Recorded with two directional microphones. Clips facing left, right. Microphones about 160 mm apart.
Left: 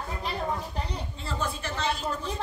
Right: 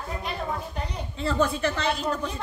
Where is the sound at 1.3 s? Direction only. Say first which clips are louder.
Right 9 dB; 70° right (ahead or behind).